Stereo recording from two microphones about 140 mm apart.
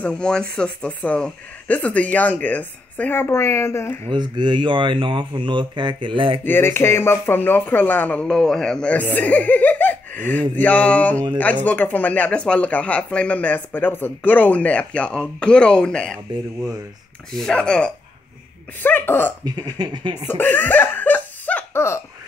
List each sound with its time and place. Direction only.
0.0 s speech: 5° left (ahead or behind)
4.1 s speech: 30° right (ahead or behind)
6.4 s speech: 15° left (ahead or behind)
17.3 s speech: centre (ahead or behind)
19.4 s speech: 30° right (ahead or behind)
20.2 s speech: 15° left (ahead or behind)